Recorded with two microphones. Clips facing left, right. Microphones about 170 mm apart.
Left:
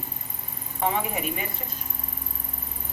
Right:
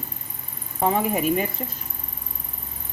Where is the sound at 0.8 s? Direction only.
40° right (ahead or behind).